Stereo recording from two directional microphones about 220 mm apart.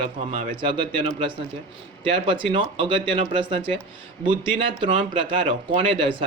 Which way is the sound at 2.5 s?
20° right (ahead or behind).